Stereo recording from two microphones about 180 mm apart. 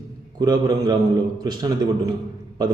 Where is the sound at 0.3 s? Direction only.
20° right (ahead or behind).